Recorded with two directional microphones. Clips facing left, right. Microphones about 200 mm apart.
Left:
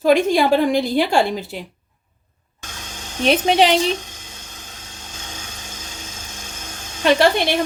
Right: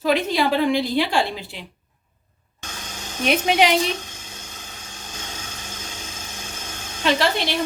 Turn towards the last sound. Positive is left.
turn(degrees=55)  # may be behind; listen again after turning